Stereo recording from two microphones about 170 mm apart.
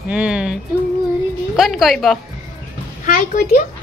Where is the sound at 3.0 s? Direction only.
50° left (ahead or behind).